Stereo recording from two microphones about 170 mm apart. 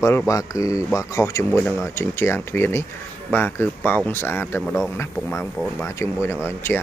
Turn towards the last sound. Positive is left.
turn(degrees=15)  # may be behind; listen again after turning